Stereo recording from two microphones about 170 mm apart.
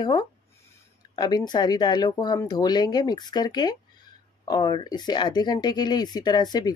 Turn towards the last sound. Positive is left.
turn(degrees=25)  # may be behind; listen again after turning